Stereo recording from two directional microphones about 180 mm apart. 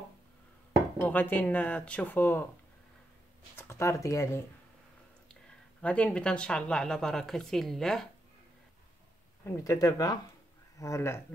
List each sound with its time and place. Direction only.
1.0 s speech: 10° left (ahead or behind)
3.5 s speech: 15° left (ahead or behind)
5.3 s speech: 5° left (ahead or behind)
9.4 s speech: 15° left (ahead or behind)